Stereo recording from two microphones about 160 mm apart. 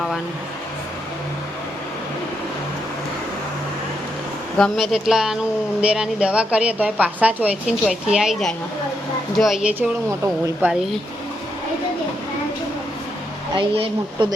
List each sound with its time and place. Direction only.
4.5 s a woman's voice: centre (ahead or behind)
13.6 s speech: 30° right (ahead or behind)